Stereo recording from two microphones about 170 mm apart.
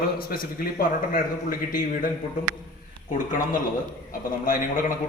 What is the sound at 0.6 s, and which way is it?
A man's voice, 55° left (ahead or behind).